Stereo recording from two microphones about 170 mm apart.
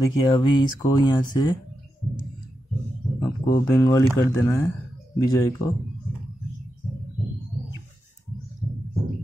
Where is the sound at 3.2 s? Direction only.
20° left (ahead or behind).